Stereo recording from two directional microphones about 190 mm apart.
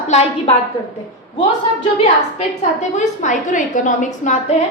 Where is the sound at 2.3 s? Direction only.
40° left (ahead or behind).